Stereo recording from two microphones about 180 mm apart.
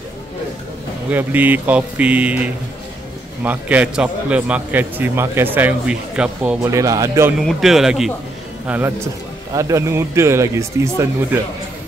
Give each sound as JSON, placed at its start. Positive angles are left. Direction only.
{"t": 1.1, "sound": "a man's voice", "side_deg": -10}
{"t": 6.7, "sound": "a man's voice", "side_deg": -20}
{"t": 7.3, "sound": "a man's voice", "side_deg": 0}